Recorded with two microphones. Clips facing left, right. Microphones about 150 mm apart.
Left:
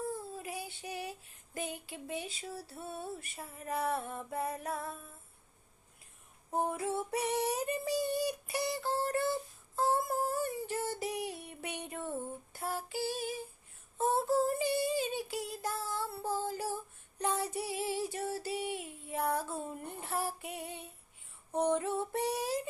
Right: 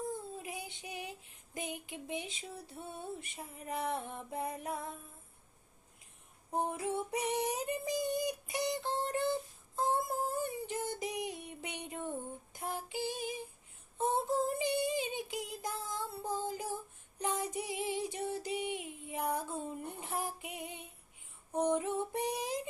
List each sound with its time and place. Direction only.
0.3 s female singing: 20° right (ahead or behind)
2.6 s a sound: 20° right (ahead or behind)
6.7 s female singing: 15° right (ahead or behind)
10.8 s music: 15° right (ahead or behind)
12.5 s female singing: 15° right (ahead or behind)
14.0 s child singing: 20° right (ahead or behind)
16.4 s a sound: 15° right (ahead or behind)
17.2 s female singing: 10° right (ahead or behind)